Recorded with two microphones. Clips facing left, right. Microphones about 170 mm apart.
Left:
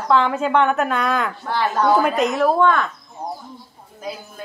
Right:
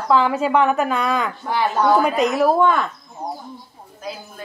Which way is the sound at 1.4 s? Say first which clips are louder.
Right 1 dB; 10° right (ahead or behind).